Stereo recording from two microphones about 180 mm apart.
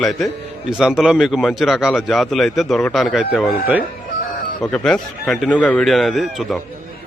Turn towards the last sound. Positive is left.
turn(degrees=0)  # may be behind; listen again after turning